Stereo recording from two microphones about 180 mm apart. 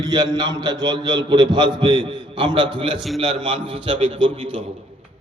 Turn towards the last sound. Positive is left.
turn(degrees=-25)  # may be behind; listen again after turning